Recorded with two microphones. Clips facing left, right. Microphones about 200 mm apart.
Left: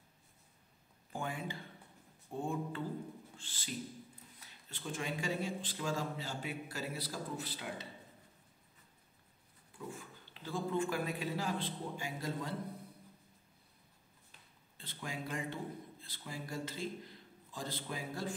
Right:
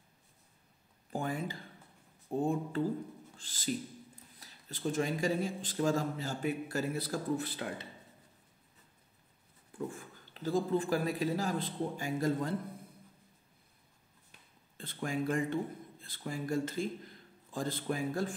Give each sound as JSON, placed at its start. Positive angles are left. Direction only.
{"t": 1.1, "sound": "a sound", "side_deg": -40}
{"t": 2.3, "sound": "a man's voice", "side_deg": -40}
{"t": 9.9, "sound": "a man's voice", "side_deg": -40}
{"t": 14.8, "sound": "speech", "side_deg": -50}